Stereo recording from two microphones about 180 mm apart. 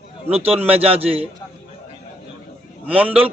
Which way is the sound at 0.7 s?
35° right (ahead or behind).